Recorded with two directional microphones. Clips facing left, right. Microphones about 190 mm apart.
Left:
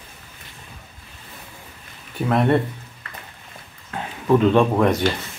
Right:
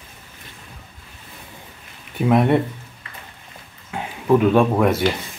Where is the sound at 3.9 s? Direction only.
10° right (ahead or behind).